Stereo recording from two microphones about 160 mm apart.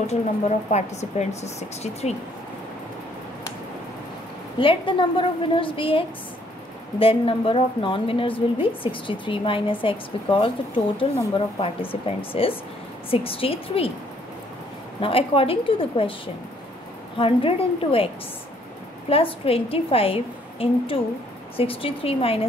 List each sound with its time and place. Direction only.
0.0 s a woman's voice: 45° left (ahead or behind)
4.6 s a woman's voice: 30° left (ahead or behind)
15.0 s a woman's voice: 35° left (ahead or behind)
17.2 s a woman's voice: 35° left (ahead or behind)